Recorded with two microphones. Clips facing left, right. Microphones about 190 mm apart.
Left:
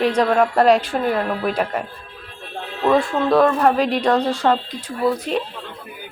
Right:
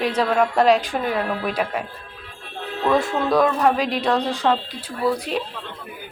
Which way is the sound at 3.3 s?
5° left (ahead or behind).